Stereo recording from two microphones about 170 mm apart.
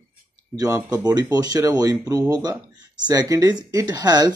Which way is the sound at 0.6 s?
20° right (ahead or behind).